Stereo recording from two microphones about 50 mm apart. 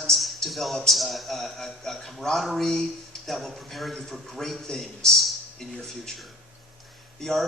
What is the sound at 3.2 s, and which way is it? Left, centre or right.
A man's voice, centre.